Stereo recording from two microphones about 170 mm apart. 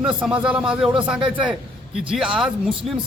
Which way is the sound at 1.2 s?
30° right (ahead or behind).